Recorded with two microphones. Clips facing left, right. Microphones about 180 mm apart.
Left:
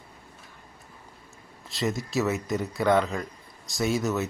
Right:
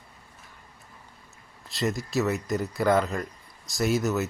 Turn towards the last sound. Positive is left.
turn(degrees=0)  # may be behind; listen again after turning